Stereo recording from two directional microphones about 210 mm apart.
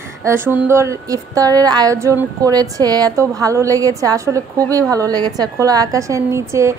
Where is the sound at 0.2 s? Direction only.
10° right (ahead or behind).